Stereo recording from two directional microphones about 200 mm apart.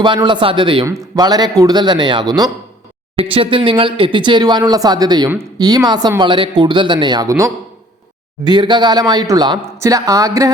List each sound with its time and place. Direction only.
0.0 s speech: 25° right (ahead or behind)